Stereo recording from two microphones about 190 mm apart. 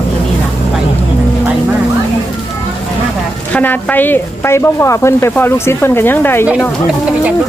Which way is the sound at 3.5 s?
10° left (ahead or behind).